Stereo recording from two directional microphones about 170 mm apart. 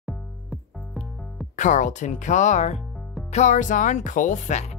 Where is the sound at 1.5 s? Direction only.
45° left (ahead or behind).